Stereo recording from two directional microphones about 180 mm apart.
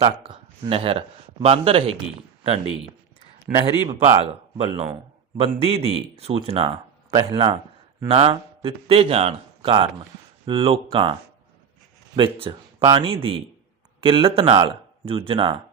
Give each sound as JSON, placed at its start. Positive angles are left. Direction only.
{"t": 0.0, "sound": "speech", "side_deg": -25}
{"t": 3.8, "sound": "speech", "side_deg": -35}
{"t": 7.1, "sound": "speech", "side_deg": -20}
{"t": 7.3, "sound": "a man's voice", "side_deg": -30}